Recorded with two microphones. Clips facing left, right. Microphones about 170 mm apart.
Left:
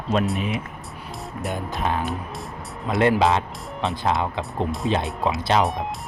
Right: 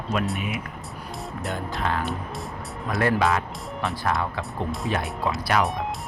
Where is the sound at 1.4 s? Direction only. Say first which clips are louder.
Left 2 dB; 20° left (ahead or behind).